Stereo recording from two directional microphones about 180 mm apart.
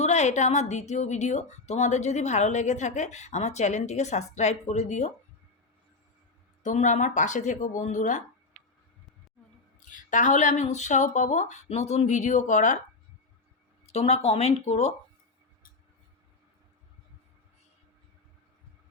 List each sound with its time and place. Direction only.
0.0 s a woman's voice: 40° left (ahead or behind)
6.6 s speech: 40° left (ahead or behind)
9.9 s a woman's voice: 45° left (ahead or behind)
13.8 s a woman's voice: 35° left (ahead or behind)